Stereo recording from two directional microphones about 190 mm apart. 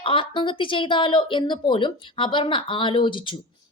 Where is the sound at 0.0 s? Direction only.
25° left (ahead or behind).